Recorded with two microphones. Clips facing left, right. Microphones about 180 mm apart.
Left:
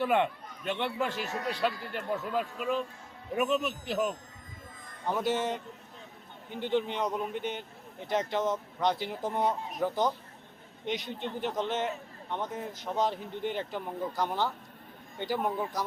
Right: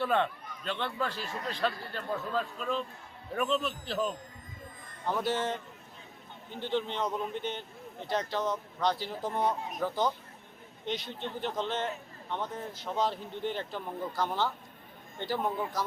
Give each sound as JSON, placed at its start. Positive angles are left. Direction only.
{"t": 0.0, "sound": "a man's voice", "side_deg": 15}